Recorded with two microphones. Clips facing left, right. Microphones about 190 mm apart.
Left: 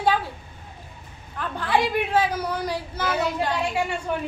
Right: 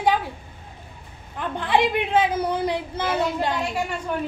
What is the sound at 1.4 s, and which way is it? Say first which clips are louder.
A woman's voice: right 2 dB; 20° right (ahead or behind).